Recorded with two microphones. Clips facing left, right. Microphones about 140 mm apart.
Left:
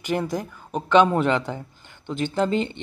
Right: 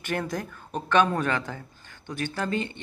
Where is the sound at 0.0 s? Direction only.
15° left (ahead or behind).